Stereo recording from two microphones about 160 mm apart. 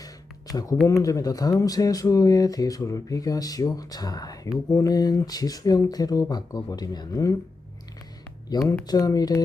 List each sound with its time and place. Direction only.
0.0 s a sound: 20° left (ahead or behind)
0.9 s speech: 20° left (ahead or behind)
8.4 s speech: 20° left (ahead or behind)